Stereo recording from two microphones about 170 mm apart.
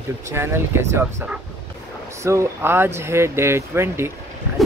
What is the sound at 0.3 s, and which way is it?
Speech, 15° right (ahead or behind).